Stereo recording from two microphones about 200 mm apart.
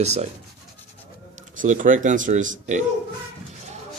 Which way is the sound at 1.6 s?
40° right (ahead or behind).